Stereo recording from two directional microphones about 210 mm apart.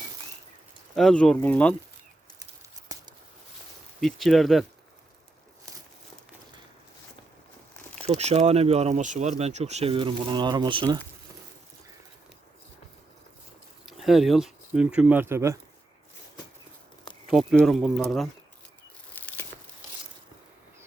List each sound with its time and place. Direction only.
0.9 s speech: 5° left (ahead or behind)
2.9 s a sound: 15° right (ahead or behind)
4.0 s speech: centre (ahead or behind)
8.0 s speech: 30° right (ahead or behind)
13.8 s speech: centre (ahead or behind)
17.2 s speech: centre (ahead or behind)